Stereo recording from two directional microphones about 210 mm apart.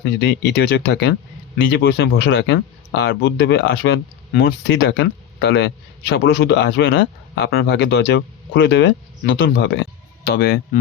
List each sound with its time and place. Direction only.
0.0 s speech: 55° left (ahead or behind)